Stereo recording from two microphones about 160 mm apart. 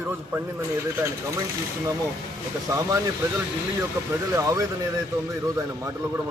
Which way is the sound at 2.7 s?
20° right (ahead or behind).